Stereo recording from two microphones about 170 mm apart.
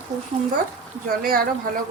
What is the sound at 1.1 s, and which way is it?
Speech, 60° right (ahead or behind).